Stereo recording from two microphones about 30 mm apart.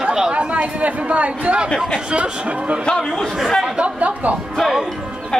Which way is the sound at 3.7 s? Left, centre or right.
Right.